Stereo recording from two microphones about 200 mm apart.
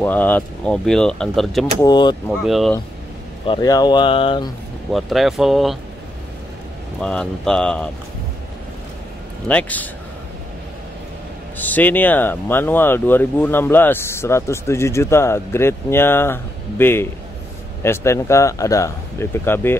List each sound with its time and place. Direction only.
0.0 s speech: 10° left (ahead or behind)
1.8 s speech: 20° left (ahead or behind)
2.2 s speech: centre (ahead or behind)
3.4 s speech: 20° left (ahead or behind)
4.9 s speech: centre (ahead or behind)
7.0 s speech: 5° left (ahead or behind)
9.5 s speech: 5° left (ahead or behind)
11.5 s speech: 10° left (ahead or behind)